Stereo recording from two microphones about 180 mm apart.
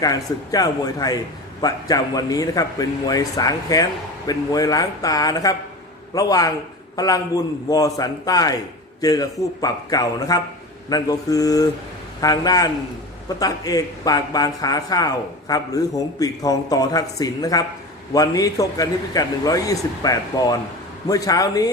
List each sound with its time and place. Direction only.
0.0 s a man's voice: 20° left (ahead or behind)